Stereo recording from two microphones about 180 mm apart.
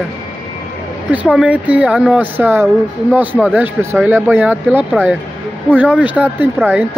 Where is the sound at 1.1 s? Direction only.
5° right (ahead or behind).